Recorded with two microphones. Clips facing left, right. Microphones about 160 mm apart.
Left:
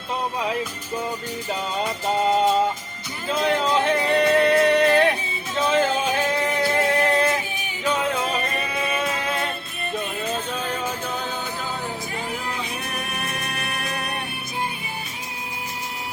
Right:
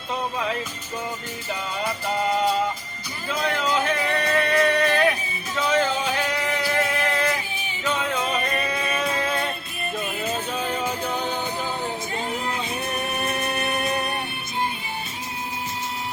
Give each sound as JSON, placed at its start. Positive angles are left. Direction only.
{"t": 1.8, "sound": "music", "side_deg": 20}
{"t": 5.5, "sound": "male singing", "side_deg": 20}
{"t": 7.5, "sound": "music", "side_deg": 15}
{"t": 8.2, "sound": "music", "side_deg": 0}
{"t": 13.1, "sound": "music", "side_deg": -25}